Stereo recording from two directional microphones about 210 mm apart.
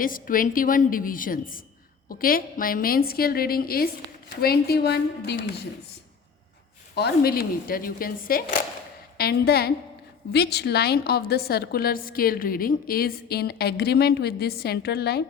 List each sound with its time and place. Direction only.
0.0 s a woman's voice: 40° left (ahead or behind)
6.9 s a woman's voice: 50° left (ahead or behind)